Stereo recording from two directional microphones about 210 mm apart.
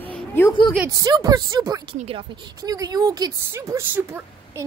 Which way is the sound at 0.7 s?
15° right (ahead or behind).